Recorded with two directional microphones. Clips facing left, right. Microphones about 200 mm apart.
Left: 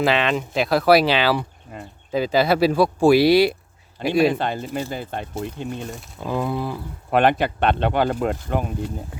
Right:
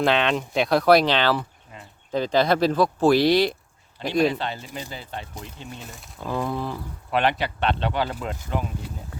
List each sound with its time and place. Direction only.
0.0 s speech: centre (ahead or behind)
1.7 s a sound: 50° left (ahead or behind)
2.1 s speech: 5° left (ahead or behind)
4.3 s speech: 50° left (ahead or behind)
6.1 s speech: 15° left (ahead or behind)
7.1 s speech: 50° left (ahead or behind)